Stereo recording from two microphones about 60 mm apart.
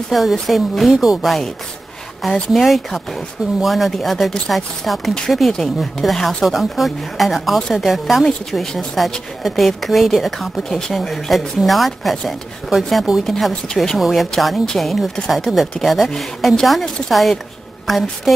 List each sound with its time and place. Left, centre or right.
0.1 s speech: centre
2.5 s speech: centre
13.2 s speech: centre
15.5 s speech: centre
15.8 s speech: centre